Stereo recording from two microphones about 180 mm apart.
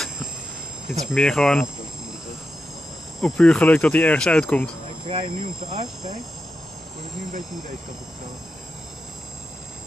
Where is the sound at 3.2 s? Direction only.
5° left (ahead or behind).